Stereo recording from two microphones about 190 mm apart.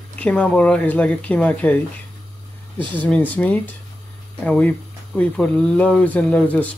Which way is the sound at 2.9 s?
10° left (ahead or behind).